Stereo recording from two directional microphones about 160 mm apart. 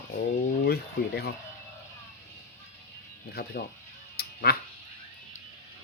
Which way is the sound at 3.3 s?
80° left.